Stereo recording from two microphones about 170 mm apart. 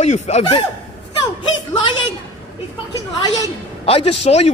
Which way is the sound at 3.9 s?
35° left (ahead or behind).